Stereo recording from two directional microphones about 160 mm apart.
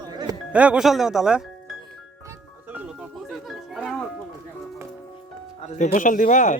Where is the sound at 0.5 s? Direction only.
10° right (ahead or behind).